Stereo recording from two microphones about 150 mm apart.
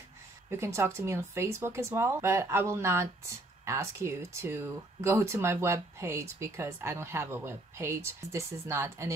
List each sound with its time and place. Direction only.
0.5 s speech: 20° right (ahead or behind)